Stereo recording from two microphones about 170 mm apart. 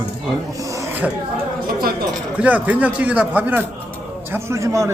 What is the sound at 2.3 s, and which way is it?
A man's voice, 10° right (ahead or behind).